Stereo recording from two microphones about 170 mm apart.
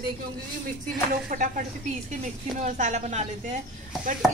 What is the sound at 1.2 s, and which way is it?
Speech, 50° right (ahead or behind).